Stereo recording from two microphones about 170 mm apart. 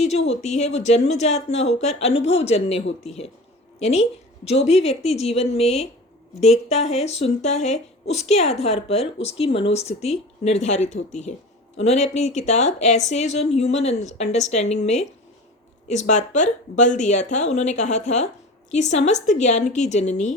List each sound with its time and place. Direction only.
0.0 s a woman's voice: 40° left (ahead or behind)